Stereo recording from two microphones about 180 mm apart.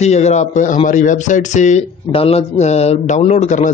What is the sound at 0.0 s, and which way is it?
Speech, 40° left (ahead or behind).